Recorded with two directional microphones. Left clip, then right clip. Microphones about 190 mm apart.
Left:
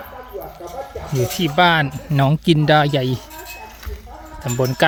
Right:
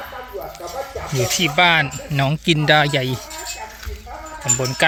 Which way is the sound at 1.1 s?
25° left (ahead or behind).